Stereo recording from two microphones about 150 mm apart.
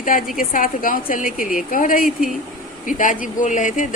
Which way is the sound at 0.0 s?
65° left (ahead or behind).